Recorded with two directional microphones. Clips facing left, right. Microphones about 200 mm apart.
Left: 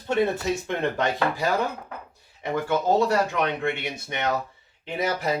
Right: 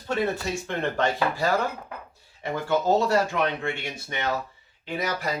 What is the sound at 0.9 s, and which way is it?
Speech, 15° left (ahead or behind).